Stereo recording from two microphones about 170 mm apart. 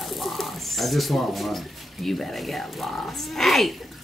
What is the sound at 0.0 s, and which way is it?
Speech, centre (ahead or behind).